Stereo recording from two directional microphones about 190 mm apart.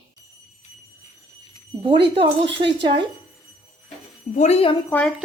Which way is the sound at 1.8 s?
25° right (ahead or behind).